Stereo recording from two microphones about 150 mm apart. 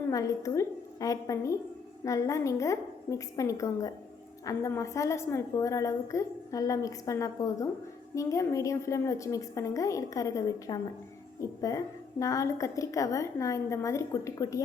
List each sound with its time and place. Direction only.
0.1 s a woman's voice: 20° left (ahead or behind)